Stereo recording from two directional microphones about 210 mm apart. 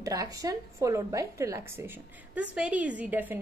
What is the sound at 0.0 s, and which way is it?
A woman's voice, 15° right (ahead or behind).